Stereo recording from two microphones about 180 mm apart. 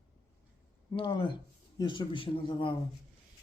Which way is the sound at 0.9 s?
25° left (ahead or behind).